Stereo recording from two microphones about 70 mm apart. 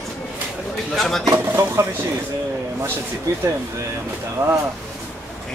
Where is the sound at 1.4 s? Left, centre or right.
Right.